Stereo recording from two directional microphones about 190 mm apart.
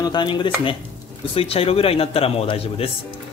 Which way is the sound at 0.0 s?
25° left (ahead or behind).